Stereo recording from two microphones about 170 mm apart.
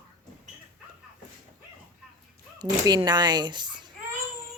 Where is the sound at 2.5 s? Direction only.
25° right (ahead or behind).